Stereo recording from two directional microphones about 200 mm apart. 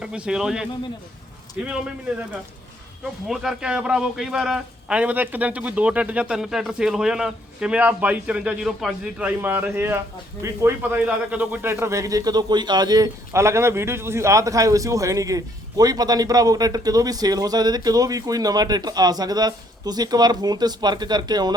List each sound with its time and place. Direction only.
0.0 s a man's voice: 5° right (ahead or behind)
3.0 s a man's voice: centre (ahead or behind); by 21.5 s 20° right (ahead or behind)